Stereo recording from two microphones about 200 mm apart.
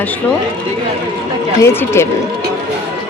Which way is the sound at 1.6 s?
15° left (ahead or behind).